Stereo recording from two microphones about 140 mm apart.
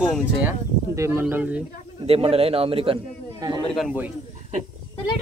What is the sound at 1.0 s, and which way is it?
Speech, 15° right (ahead or behind).